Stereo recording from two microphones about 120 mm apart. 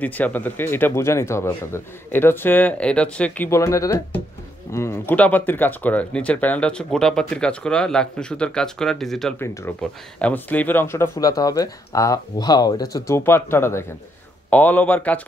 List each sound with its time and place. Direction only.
0.0 s speech: 15° left (ahead or behind)
3.4 s speech: 25° left (ahead or behind); by 9.3 s 5° left (ahead or behind)
9.4 s speech: 20° left (ahead or behind)
11.1 s speech: 30° left (ahead or behind); by 15.1 s 15° left (ahead or behind)